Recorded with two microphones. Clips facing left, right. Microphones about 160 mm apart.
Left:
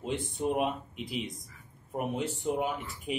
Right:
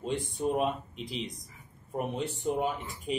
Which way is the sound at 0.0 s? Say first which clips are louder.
Right 1 dB; 5° left (ahead or behind).